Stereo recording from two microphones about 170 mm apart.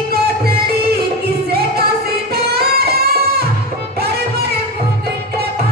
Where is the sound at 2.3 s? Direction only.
65° right (ahead or behind).